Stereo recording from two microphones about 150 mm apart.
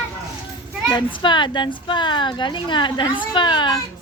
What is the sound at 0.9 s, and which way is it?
A woman's voice, 30° left (ahead or behind).